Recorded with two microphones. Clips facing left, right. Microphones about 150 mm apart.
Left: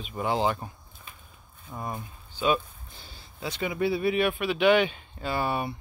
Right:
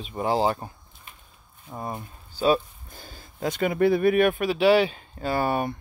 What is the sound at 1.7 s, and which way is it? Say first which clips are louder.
Speech: right 2 dB; 25° right (ahead or behind).